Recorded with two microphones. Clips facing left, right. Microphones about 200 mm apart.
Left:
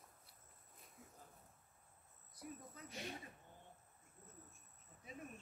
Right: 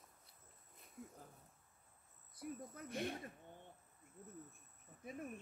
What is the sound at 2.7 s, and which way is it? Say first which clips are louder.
Speech: right 8 dB; 55° right (ahead or behind).